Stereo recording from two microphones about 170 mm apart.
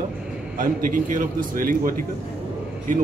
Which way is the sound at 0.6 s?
55° right (ahead or behind).